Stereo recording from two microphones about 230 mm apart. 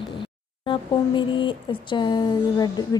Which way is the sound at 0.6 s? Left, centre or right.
Left.